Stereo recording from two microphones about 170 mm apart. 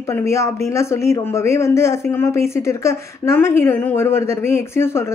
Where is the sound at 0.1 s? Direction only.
15° left (ahead or behind).